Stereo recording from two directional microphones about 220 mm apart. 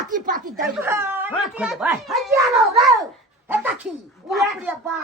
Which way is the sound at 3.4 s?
10° right (ahead or behind).